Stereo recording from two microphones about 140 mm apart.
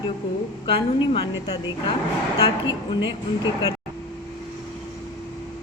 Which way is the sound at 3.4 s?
25° left (ahead or behind).